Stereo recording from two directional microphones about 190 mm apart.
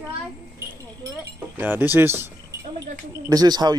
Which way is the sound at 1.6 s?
10° right (ahead or behind).